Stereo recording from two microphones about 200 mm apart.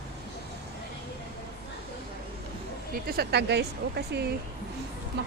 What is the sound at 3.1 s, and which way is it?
Speech, 55° right (ahead or behind).